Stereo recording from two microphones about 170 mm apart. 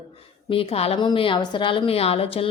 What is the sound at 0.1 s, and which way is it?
A woman's voice, 35° left (ahead or behind).